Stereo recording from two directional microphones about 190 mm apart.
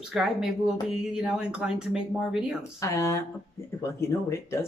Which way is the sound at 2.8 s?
15° left (ahead or behind).